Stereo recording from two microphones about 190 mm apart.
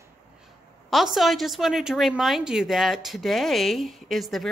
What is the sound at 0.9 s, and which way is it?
A woman's voice, centre (ahead or behind).